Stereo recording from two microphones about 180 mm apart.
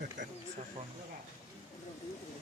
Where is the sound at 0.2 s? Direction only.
45° right (ahead or behind).